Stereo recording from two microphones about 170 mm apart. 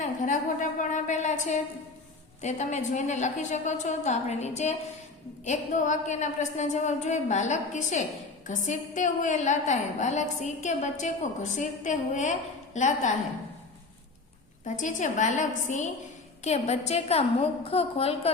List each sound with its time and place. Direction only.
0.0 s a woman's voice: 50° left (ahead or behind)
14.6 s a woman's voice: 50° left (ahead or behind)